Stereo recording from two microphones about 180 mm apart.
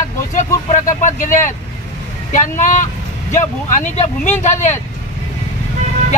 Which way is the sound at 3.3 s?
40° left (ahead or behind).